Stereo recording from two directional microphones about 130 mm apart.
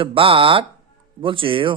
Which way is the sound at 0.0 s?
45° right (ahead or behind).